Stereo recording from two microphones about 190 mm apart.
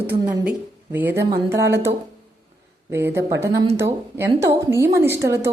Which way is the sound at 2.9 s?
10° right (ahead or behind).